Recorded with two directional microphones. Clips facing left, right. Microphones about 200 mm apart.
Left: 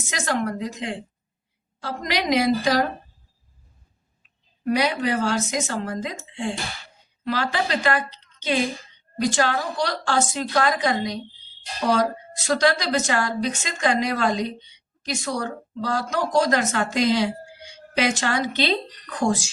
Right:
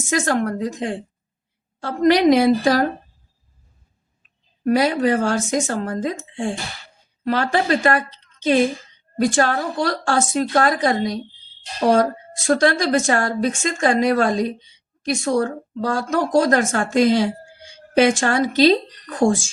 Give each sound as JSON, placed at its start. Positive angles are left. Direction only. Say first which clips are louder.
{"t": 0.1, "sound": "a woman's voice", "louder": "right 5 dB", "side_deg": -50}
{"t": 4.6, "sound": "a woman's voice", "louder": "right 5 dB", "side_deg": -45}
{"t": 9.1, "sound": "a woman's voice", "louder": "right 4 dB", "side_deg": -50}